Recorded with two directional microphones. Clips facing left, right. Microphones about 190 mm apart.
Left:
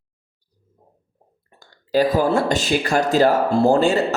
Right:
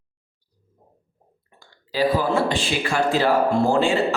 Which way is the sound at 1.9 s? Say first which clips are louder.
Left 4 dB; 45° left (ahead or behind).